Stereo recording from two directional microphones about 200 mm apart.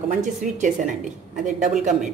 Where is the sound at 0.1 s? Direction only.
40° right (ahead or behind).